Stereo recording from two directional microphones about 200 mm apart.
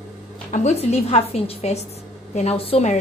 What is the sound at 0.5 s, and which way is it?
A woman's voice, 35° left (ahead or behind).